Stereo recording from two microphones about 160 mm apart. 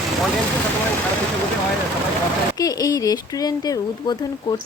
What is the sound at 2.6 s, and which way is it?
A woman's voice, 25° left (ahead or behind).